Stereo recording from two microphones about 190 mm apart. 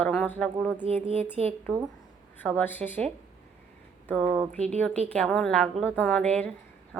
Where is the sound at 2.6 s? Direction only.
10° left (ahead or behind).